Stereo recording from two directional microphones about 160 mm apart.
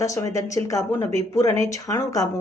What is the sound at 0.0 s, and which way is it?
Speech, 20° left (ahead or behind).